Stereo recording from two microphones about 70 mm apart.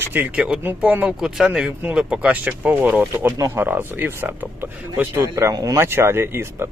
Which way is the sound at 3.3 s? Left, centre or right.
Right.